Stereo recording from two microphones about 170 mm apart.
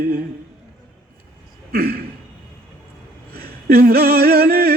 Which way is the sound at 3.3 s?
65° right (ahead or behind).